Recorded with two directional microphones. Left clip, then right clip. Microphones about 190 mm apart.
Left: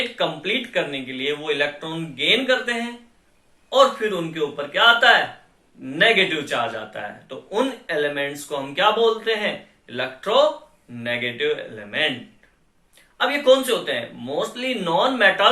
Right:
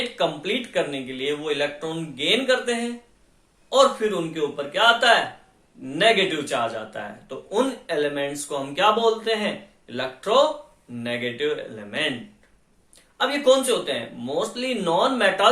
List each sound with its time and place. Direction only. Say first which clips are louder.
0.2 s a man's voice: right 1 dB; 25° right (ahead or behind)
13.1 s a man's voice: left 2 dB; 20° right (ahead or behind)